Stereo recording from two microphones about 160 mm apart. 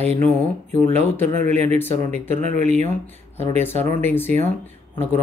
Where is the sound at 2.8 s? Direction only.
15° left (ahead or behind).